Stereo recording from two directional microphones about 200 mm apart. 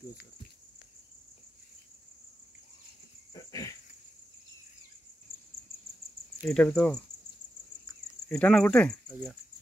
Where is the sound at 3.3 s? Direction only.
15° left (ahead or behind).